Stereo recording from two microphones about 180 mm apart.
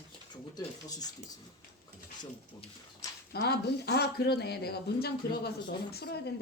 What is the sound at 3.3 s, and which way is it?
Speech, 60° left (ahead or behind).